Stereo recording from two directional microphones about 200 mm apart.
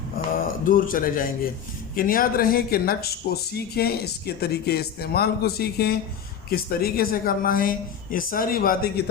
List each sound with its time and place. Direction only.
0.6 s speech: 45° left (ahead or behind)